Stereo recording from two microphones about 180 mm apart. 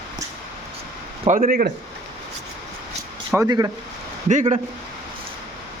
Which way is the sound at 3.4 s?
20° right (ahead or behind).